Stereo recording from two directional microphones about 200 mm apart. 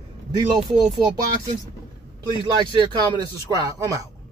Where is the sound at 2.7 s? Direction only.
20° right (ahead or behind).